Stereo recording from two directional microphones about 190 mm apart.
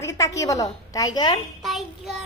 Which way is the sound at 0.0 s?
15° left (ahead or behind).